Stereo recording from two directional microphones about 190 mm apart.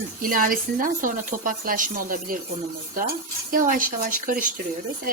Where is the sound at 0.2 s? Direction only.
45° right (ahead or behind).